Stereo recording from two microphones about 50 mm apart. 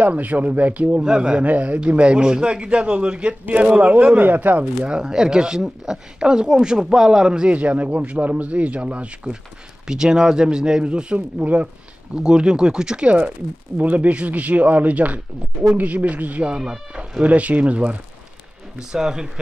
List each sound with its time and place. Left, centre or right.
0.0 s speech: right
1.0 s speech: centre
1.4 s a man's voice: right
4.3 s speech: right
4.8 s speech: centre
7.5 s a man's voice: right
12.2 s speech: centre; by 16.5 s right
16.5 s speech: centre
17.2 s a man's voice: right
18.8 s speech: centre